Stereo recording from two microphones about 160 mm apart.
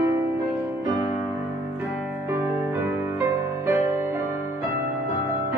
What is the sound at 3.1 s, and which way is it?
Music, 15° right (ahead or behind).